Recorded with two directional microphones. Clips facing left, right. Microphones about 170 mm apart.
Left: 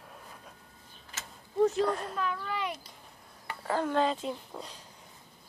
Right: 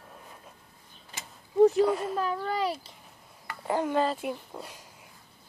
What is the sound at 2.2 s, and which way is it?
Speech, 35° right (ahead or behind).